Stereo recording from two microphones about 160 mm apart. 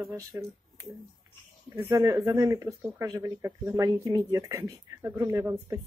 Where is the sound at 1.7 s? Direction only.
15° right (ahead or behind).